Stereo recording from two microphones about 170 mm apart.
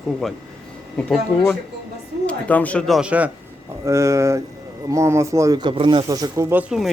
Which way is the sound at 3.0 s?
10° right (ahead or behind).